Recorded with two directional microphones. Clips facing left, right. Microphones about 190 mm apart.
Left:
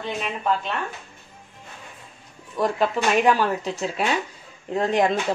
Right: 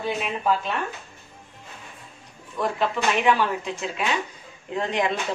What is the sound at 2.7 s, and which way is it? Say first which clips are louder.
Speech: left 3 dB; 40° left (ahead or behind).